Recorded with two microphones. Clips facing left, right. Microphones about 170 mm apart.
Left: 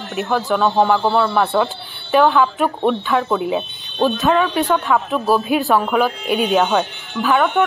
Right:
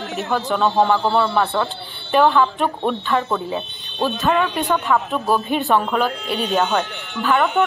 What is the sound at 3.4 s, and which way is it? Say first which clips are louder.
Speech: left 5 dB; 15° left (ahead or behind).